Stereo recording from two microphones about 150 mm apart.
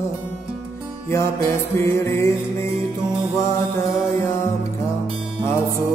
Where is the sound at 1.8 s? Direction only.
15° left (ahead or behind).